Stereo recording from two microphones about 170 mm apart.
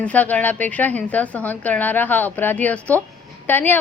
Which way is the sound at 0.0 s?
10° left (ahead or behind).